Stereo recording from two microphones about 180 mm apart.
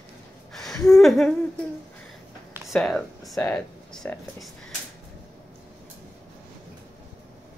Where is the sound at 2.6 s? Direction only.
Centre (ahead or behind).